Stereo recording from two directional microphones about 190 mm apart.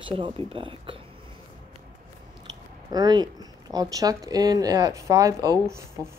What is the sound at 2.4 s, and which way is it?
Speech, 20° right (ahead or behind).